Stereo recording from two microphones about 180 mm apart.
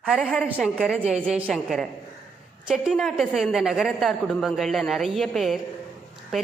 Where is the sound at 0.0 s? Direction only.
Centre (ahead or behind).